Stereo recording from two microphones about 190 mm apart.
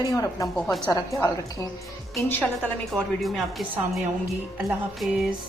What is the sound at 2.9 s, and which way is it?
Speech, centre (ahead or behind).